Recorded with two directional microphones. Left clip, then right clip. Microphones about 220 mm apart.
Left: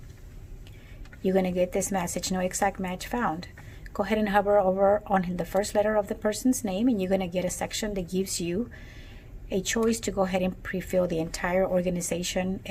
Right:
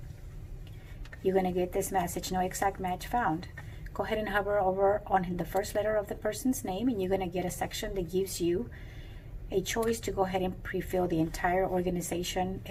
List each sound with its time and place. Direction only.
1.2 s speech: 50° left (ahead or behind)